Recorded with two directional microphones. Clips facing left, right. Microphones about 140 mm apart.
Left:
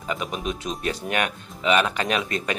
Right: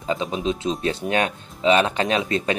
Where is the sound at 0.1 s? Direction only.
25° right (ahead or behind).